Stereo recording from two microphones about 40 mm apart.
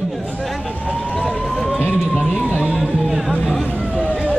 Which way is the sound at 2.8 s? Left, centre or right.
Centre.